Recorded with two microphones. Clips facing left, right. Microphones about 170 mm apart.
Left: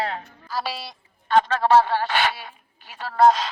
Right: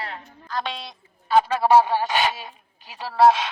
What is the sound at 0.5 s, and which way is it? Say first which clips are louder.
Speech: even; 5° left (ahead or behind).